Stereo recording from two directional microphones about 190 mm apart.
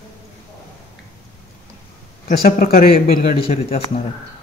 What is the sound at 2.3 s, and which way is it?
Speech, 50° left (ahead or behind).